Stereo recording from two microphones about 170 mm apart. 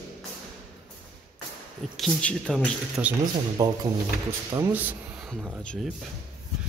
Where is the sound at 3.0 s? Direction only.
15° right (ahead or behind).